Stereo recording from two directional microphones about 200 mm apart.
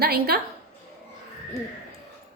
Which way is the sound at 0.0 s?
50° right (ahead or behind).